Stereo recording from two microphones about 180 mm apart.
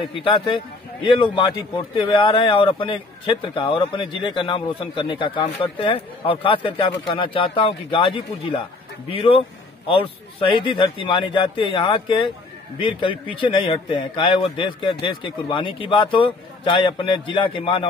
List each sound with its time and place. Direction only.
0.0 s a man's voice: 30° left (ahead or behind)